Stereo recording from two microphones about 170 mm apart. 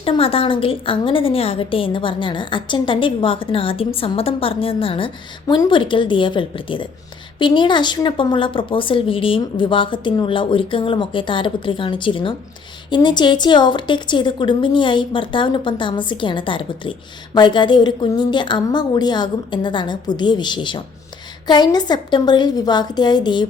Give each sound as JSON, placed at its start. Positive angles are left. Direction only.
{"t": 0.0, "sound": "a woman's voice", "side_deg": 35}